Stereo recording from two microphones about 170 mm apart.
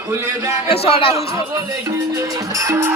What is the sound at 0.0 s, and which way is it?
Speech, 15° right (ahead or behind).